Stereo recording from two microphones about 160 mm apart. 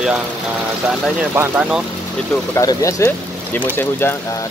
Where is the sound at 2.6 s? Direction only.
20° left (ahead or behind).